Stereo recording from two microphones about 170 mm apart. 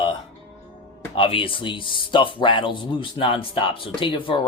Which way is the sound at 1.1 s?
30° left (ahead or behind).